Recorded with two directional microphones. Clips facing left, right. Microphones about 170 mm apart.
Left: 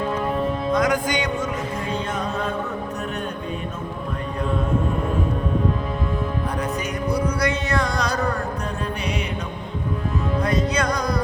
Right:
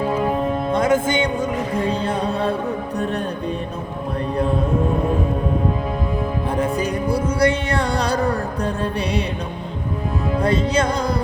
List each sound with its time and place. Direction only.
0.7 s music: 25° right (ahead or behind)
6.6 s music: 30° right (ahead or behind)
10.4 s music: 30° right (ahead or behind)